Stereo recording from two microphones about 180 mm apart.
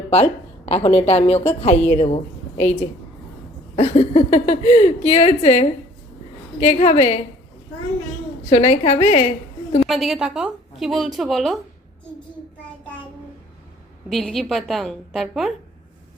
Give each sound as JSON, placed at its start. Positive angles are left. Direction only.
{"t": 0.1, "sound": "a woman's voice", "side_deg": 35}
{"t": 3.8, "sound": "speech", "side_deg": 35}
{"t": 8.4, "sound": "speech", "side_deg": 35}
{"t": 9.8, "sound": "a woman's voice", "side_deg": 0}
{"t": 14.1, "sound": "a woman's voice", "side_deg": 0}